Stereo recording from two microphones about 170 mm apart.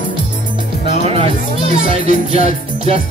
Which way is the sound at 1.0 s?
35° right (ahead or behind).